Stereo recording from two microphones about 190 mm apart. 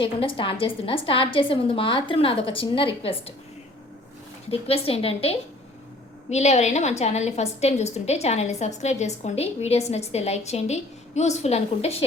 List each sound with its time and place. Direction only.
0.0 s a woman's voice: 30° left (ahead or behind)
4.7 s a woman's voice: 30° left (ahead or behind)